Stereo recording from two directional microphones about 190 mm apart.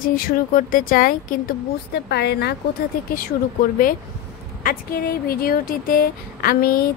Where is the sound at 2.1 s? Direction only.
60° left (ahead or behind).